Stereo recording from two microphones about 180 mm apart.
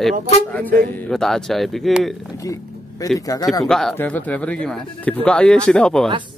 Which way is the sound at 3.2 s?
20° left (ahead or behind).